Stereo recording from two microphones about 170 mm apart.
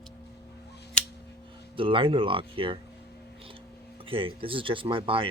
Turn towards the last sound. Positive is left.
turn(degrees=-30)  # may be behind; listen again after turning